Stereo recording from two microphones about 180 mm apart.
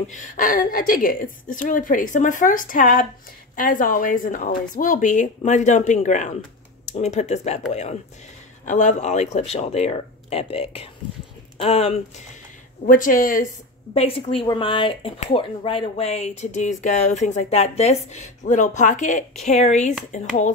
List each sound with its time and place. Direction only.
0.1 s a woman's voice: 45° left (ahead or behind)
8.6 s speech: 45° left (ahead or behind)
12.8 s a woman's voice: 45° left (ahead or behind)
13.9 s speech: 30° left (ahead or behind)